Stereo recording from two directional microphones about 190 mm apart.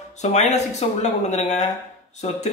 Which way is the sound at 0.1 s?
35° left (ahead or behind).